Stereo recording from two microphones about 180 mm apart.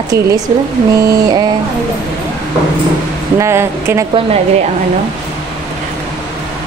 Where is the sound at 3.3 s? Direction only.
15° right (ahead or behind).